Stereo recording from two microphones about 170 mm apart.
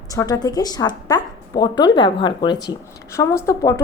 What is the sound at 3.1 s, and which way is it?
Speech, 15° left (ahead or behind).